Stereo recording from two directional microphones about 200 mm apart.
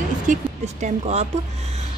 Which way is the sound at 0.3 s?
35° right (ahead or behind).